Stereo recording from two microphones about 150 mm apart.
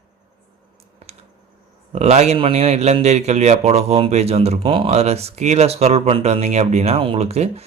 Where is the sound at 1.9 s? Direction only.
45° right (ahead or behind).